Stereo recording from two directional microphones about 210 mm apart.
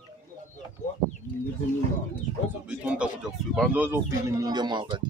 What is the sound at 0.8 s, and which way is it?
Speech, 35° left (ahead or behind).